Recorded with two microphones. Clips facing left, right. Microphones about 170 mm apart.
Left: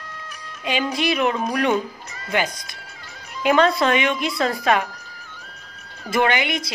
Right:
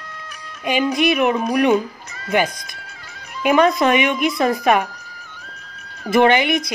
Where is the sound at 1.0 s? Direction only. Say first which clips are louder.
Right 2 dB; 15° right (ahead or behind).